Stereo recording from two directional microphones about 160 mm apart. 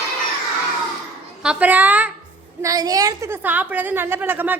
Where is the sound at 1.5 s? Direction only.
10° right (ahead or behind).